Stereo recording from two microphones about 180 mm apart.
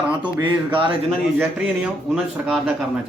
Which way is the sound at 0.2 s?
25° right (ahead or behind).